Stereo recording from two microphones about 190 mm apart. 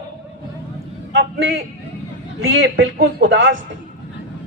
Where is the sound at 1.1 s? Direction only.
65° right (ahead or behind).